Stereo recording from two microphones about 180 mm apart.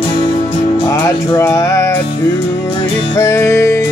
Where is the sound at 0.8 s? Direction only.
15° left (ahead or behind).